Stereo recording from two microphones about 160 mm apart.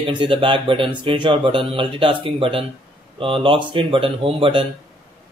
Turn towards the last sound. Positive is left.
turn(degrees=-35)  # may be behind; listen again after turning